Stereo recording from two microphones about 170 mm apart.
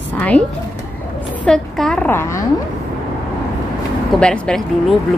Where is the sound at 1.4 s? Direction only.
5° left (ahead or behind).